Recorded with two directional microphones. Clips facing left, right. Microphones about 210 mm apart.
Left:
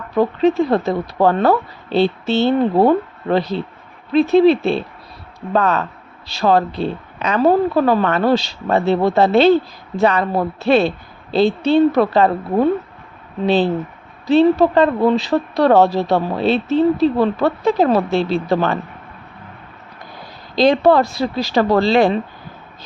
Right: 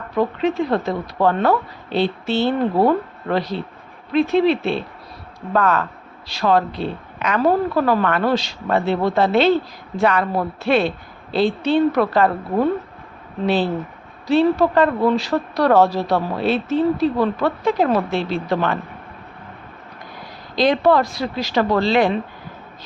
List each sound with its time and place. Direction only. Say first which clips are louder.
0.2 s speech: left 5 dB; 35° left (ahead or behind)
5.5 s speech: left 1 dB; 20° left (ahead or behind)
20.6 s speech: left 3 dB; 30° left (ahead or behind)